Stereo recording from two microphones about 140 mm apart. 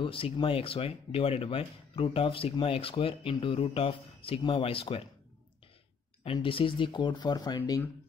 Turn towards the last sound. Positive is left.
turn(degrees=30)  # may be behind; listen again after turning